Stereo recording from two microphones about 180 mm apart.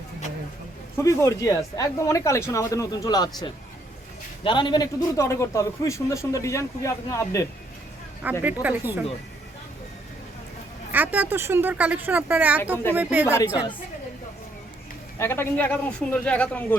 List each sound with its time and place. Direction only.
0.9 s a man's voice: 15° left (ahead or behind)
8.2 s speech: 10° right (ahead or behind)
10.9 s speech: 10° right (ahead or behind)
15.2 s a man's voice: 15° left (ahead or behind)